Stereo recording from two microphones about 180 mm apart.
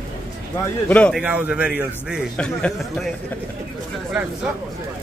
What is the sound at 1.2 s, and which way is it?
Speech, 5° right (ahead or behind).